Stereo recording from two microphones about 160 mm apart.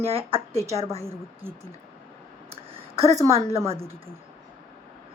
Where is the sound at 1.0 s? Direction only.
15° right (ahead or behind).